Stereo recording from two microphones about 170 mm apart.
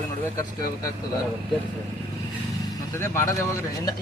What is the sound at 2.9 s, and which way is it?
Speech, 15° left (ahead or behind).